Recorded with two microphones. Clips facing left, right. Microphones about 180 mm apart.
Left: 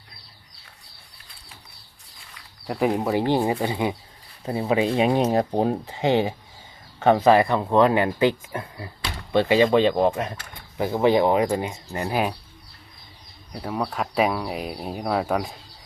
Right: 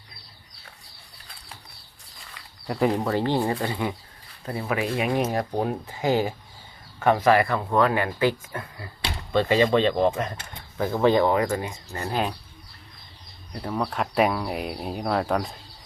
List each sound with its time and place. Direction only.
2.6 s speech: centre (ahead or behind)
2.9 s speech: 15° left (ahead or behind)
13.5 s speech: 5° left (ahead or behind)